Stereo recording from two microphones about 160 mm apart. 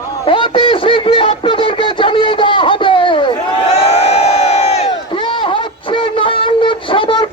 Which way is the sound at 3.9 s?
40° left (ahead or behind).